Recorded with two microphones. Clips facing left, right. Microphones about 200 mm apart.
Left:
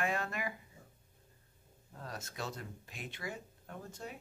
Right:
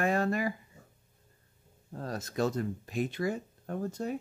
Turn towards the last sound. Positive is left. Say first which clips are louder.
# right 12 dB
turn(degrees=-45)  # may be behind; listen again after turning